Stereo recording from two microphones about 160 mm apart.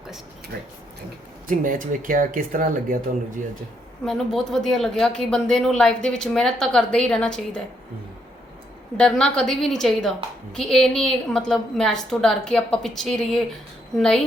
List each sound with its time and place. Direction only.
1.5 s speech: 55° right (ahead or behind)
4.0 s speech: centre (ahead or behind)
9.0 s speech: 5° left (ahead or behind)